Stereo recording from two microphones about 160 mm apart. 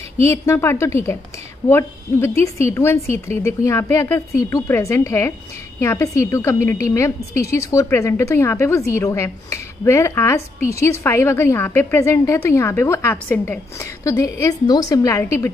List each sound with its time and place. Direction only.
0.3 s a woman's voice: 15° left (ahead or behind)